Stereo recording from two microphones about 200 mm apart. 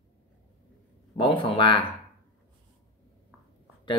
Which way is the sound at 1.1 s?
25° left (ahead or behind).